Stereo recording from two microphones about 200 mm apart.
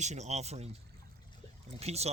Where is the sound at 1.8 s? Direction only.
30° right (ahead or behind).